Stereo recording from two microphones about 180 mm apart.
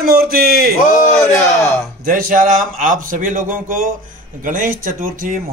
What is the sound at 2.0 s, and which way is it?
Speech, 50° right (ahead or behind).